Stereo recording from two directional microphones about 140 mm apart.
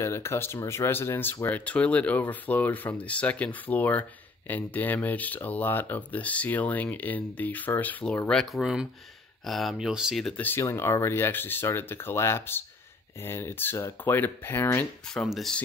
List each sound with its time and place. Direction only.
0.0 s speech: 20° left (ahead or behind); by 10.4 s centre (ahead or behind)
10.4 s speech: 15° left (ahead or behind)
15.2 s speech: centre (ahead or behind)